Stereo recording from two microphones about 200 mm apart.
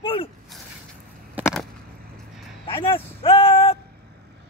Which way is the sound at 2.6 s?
25° left (ahead or behind).